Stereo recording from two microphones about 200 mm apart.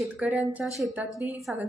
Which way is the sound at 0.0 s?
Centre (ahead or behind).